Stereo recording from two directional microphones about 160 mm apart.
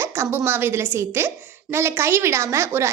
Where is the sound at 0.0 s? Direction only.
15° right (ahead or behind).